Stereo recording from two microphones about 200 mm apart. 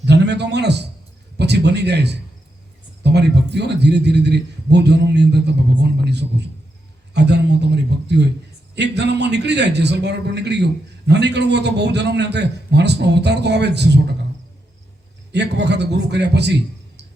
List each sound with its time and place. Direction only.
0.0 s a sound: 60° right (ahead or behind)
3.0 s a man's voice: 55° right (ahead or behind)
15.3 s a man's voice: 60° right (ahead or behind)